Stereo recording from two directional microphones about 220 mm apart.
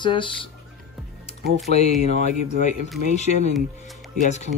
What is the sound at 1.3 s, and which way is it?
Music, 30° left (ahead or behind).